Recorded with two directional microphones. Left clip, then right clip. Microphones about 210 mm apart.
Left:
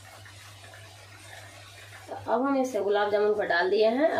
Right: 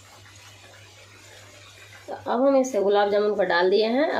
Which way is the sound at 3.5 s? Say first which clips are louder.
Right 3 dB; 35° right (ahead or behind).